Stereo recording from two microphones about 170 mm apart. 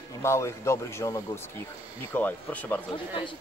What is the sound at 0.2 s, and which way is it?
Speech, 15° left (ahead or behind).